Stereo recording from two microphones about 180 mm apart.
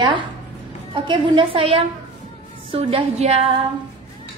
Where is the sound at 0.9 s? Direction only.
25° right (ahead or behind).